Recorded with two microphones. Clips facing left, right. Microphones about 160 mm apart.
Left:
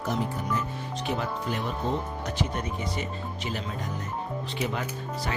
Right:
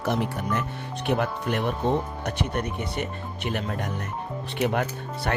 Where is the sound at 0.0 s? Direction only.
70° right (ahead or behind).